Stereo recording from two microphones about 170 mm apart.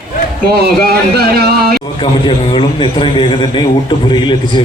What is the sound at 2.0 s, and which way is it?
A man's voice, 30° left (ahead or behind).